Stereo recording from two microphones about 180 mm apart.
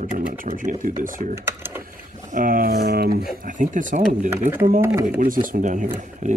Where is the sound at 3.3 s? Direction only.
45° right (ahead or behind).